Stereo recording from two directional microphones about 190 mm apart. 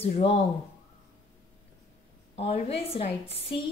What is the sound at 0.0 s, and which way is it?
Speech, 30° left (ahead or behind).